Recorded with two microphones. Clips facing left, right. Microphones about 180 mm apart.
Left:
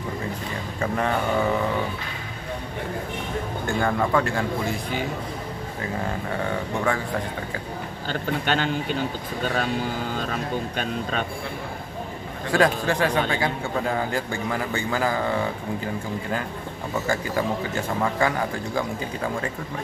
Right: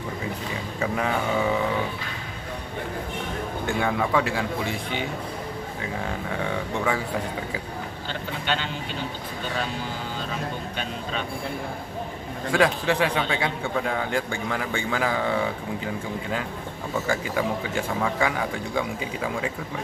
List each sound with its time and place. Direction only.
0.7 s a man's voice: 5° right (ahead or behind)
3.6 s a man's voice: centre (ahead or behind)
8.1 s a man's voice: 45° left (ahead or behind)
10.8 s a man's voice: 50° left (ahead or behind)
12.5 s a man's voice: centre (ahead or behind)
17.1 s a man's voice: centre (ahead or behind)